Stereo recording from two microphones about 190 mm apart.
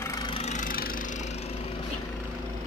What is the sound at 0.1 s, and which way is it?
Vehicle, 30° left (ahead or behind).